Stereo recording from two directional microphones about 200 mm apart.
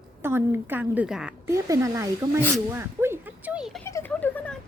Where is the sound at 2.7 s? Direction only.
10° right (ahead or behind).